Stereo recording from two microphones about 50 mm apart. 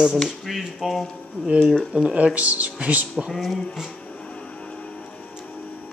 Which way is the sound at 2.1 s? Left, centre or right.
Right.